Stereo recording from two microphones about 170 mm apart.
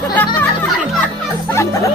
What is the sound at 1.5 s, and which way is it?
Music, 15° left (ahead or behind).